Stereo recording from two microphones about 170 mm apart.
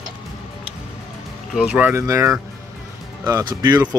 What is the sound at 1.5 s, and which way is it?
Speech, 5° right (ahead or behind).